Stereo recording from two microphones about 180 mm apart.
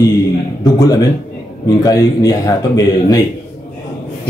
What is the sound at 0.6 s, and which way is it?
Speech, 20° left (ahead or behind).